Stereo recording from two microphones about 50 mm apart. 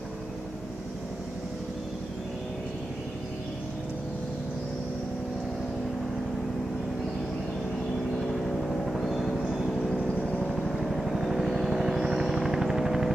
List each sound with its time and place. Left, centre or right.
8.6 s vehicle: centre
10.4 s vehicle: centre